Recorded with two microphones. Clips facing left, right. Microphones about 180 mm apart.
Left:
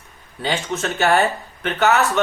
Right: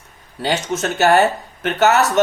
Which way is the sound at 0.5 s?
40° right (ahead or behind).